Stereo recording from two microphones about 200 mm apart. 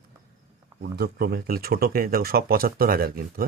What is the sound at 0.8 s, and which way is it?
Speech, 50° right (ahead or behind).